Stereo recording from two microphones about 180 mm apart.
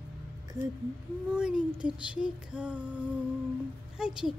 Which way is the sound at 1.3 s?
5° right (ahead or behind).